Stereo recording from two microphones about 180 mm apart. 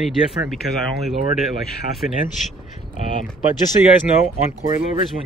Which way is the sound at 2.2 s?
45° left (ahead or behind).